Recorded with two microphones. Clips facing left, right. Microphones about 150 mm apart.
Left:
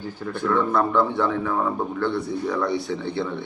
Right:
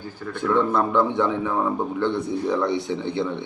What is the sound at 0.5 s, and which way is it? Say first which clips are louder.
A man's voice: right 1 dB; 20° right (ahead or behind).